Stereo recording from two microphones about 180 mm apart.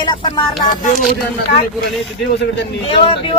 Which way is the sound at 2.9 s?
30° left (ahead or behind).